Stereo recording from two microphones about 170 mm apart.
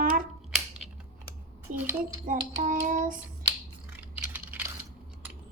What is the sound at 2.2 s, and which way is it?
Child singing, 50° right (ahead or behind).